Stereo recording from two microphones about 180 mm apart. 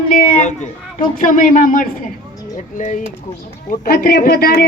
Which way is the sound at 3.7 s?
55° left (ahead or behind).